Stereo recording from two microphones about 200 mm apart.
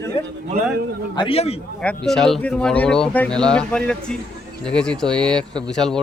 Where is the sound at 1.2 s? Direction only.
30° left (ahead or behind).